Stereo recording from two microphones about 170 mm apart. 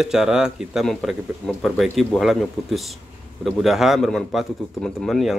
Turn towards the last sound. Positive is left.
turn(degrees=0)  # may be behind; listen again after turning